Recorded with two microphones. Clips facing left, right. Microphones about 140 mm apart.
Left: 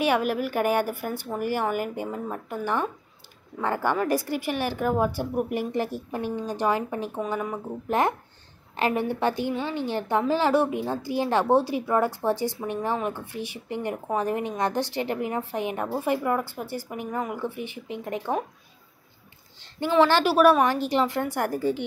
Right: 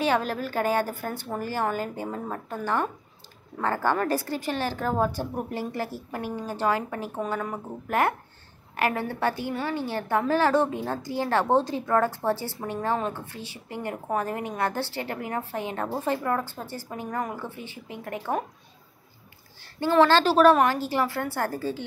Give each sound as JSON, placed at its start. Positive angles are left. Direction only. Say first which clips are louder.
{"t": 0.0, "sound": "a woman's voice", "louder": "left 2 dB", "side_deg": 15}
{"t": 19.6, "sound": "a woman's voice", "louder": "even", "side_deg": 15}